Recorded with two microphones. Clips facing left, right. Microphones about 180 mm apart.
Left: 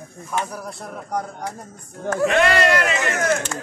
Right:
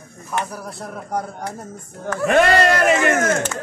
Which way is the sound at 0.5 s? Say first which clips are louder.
Right 1 dB; centre (ahead or behind).